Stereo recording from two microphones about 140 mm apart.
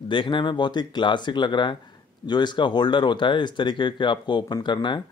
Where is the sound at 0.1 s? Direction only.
35° left (ahead or behind).